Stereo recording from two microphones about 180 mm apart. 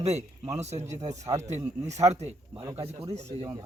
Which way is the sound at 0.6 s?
40° right (ahead or behind).